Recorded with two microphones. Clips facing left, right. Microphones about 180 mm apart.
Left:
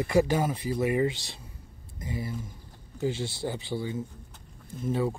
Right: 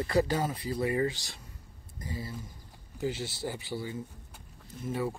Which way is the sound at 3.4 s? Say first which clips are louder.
Left 3 dB; 20° left (ahead or behind).